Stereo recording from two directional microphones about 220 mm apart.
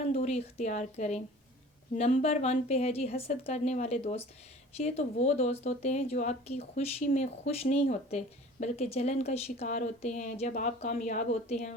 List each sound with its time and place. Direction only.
0.1 s speech: 30° left (ahead or behind)